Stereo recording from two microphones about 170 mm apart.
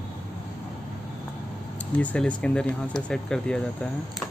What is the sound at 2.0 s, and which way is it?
Speech, 10° left (ahead or behind).